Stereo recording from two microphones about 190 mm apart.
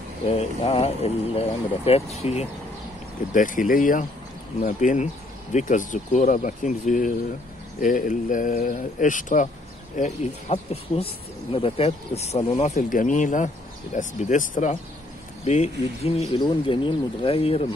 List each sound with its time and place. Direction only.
0.3 s speech: 30° left (ahead or behind)
3.3 s speech: 45° left (ahead or behind)